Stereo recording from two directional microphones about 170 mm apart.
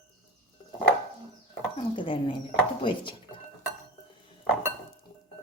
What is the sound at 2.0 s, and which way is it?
A woman's voice, 30° left (ahead or behind).